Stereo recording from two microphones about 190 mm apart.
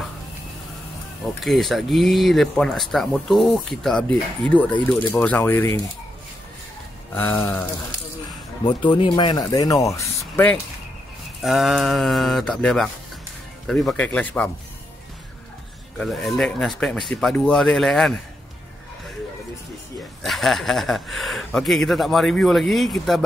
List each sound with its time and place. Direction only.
1.4 s speech: centre (ahead or behind)
7.2 s speech: 10° left (ahead or behind)
8.6 s speech: 25° left (ahead or behind); by 10.6 s 10° left (ahead or behind)
11.4 s speech: centre (ahead or behind)
16.0 s speech: centre (ahead or behind)
20.2 s speech: centre (ahead or behind)